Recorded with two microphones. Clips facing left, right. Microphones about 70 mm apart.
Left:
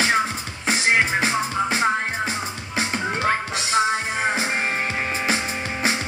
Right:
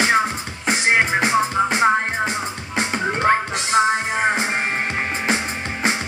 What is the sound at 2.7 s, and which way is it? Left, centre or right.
Music, centre.